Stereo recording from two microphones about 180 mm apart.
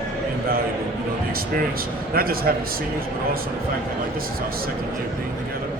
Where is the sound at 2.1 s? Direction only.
55° right (ahead or behind).